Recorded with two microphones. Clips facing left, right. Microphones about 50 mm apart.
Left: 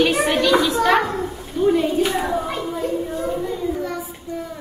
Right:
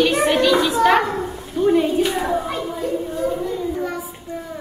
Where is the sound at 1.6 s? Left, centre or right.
Centre.